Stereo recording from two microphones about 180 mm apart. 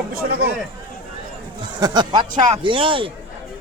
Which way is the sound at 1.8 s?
25° right (ahead or behind).